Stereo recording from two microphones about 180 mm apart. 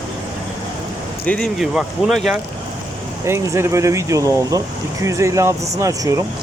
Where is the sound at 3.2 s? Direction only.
15° right (ahead or behind).